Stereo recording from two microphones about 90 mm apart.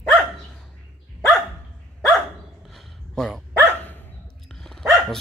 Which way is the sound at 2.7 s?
5° left (ahead or behind).